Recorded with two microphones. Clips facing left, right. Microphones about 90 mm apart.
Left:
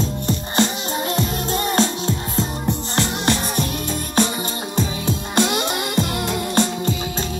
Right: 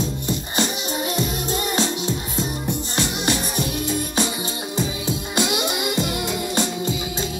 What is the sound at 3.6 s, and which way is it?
Music, 15° right (ahead or behind).